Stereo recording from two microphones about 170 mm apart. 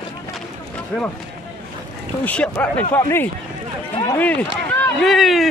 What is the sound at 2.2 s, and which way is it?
Speech, 10° left (ahead or behind).